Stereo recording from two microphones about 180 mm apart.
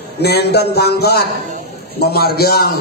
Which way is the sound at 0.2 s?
65° left (ahead or behind).